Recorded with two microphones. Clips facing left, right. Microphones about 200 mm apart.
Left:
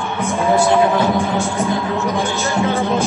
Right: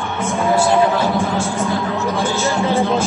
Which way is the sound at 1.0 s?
15° left (ahead or behind).